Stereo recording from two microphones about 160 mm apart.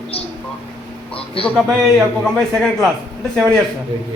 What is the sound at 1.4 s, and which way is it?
A man's voice, 5° left (ahead or behind).